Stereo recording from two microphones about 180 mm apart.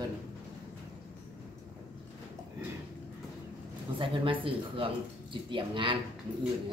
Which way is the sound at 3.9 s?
30° right (ahead or behind).